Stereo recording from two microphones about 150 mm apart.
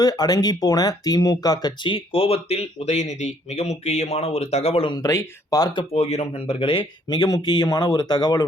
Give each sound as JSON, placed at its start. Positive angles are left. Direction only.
{"t": 0.0, "sound": "speech", "side_deg": 25}
{"t": 5.9, "sound": "speech", "side_deg": 45}